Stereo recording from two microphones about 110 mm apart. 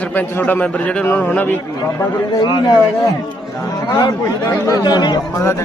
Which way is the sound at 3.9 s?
35° left (ahead or behind).